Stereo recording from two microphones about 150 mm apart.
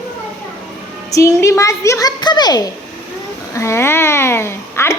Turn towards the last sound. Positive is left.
turn(degrees=15)  # may be behind; listen again after turning